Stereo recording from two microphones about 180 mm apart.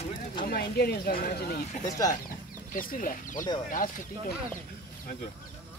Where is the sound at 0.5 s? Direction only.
60° left (ahead or behind).